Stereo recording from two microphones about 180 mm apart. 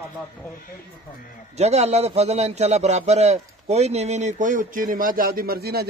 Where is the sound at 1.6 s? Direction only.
35° right (ahead or behind).